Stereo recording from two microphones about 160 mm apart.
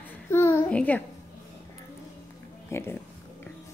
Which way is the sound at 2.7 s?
15° left (ahead or behind).